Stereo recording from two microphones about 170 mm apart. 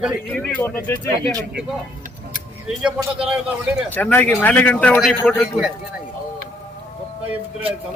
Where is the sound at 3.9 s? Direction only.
10° left (ahead or behind).